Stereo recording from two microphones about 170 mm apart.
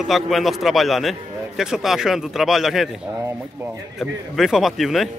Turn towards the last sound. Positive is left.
turn(degrees=0)  # may be behind; listen again after turning